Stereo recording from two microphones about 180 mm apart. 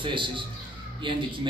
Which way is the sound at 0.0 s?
25° right (ahead or behind).